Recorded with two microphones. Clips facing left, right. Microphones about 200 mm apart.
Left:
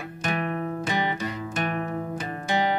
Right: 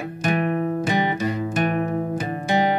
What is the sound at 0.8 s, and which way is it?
Music, 15° right (ahead or behind).